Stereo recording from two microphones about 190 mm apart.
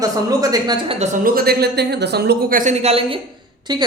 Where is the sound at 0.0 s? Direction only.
20° right (ahead or behind).